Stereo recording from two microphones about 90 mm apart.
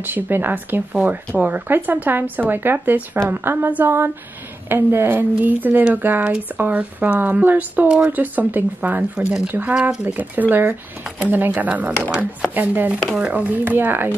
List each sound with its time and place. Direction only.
0.0 s a woman's voice: 20° right (ahead or behind)